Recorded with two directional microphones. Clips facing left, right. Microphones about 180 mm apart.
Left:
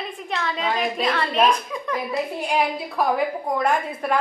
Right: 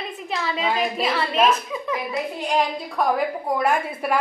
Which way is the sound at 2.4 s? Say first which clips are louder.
Right 2 dB; 10° left (ahead or behind).